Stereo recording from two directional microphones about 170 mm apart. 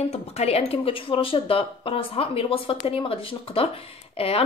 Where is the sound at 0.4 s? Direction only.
35° left (ahead or behind).